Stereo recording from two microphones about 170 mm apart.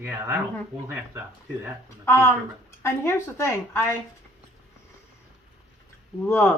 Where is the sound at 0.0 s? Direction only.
15° right (ahead or behind).